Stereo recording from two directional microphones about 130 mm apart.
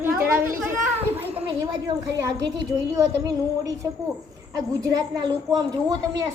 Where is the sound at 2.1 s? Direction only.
30° right (ahead or behind).